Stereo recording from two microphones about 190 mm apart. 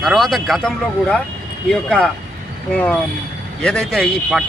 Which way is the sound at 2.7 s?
10° left (ahead or behind).